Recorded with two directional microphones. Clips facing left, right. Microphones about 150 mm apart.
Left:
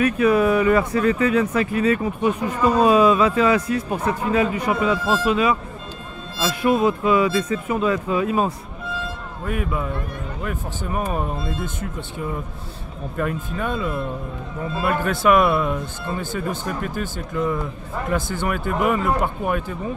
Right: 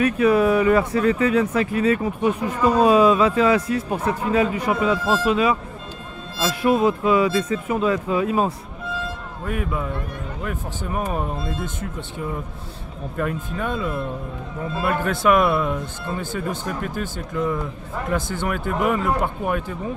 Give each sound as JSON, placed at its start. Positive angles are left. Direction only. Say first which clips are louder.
{"t": 0.0, "sound": "speech", "louder": "even", "side_deg": -30}
{"t": 9.5, "sound": "speech", "louder": "left 1 dB", "side_deg": 5}
{"t": 13.2, "sound": "speech", "louder": "left 1 dB", "side_deg": 0}